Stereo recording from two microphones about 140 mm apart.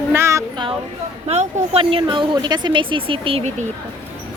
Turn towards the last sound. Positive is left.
turn(degrees=-40)  # may be behind; listen again after turning